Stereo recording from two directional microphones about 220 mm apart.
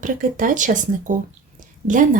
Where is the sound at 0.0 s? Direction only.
35° right (ahead or behind).